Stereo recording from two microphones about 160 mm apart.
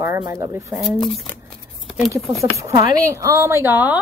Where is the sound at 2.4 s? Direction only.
20° right (ahead or behind).